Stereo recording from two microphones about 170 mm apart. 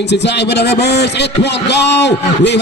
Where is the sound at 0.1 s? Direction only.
90° left.